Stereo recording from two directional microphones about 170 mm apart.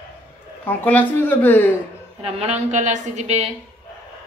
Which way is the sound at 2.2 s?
35° right (ahead or behind).